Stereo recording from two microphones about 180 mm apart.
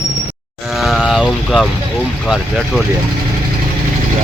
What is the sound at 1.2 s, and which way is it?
Speech, 5° right (ahead or behind).